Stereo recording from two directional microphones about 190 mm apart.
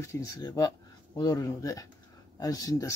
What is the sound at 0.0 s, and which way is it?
Speech, 15° left (ahead or behind).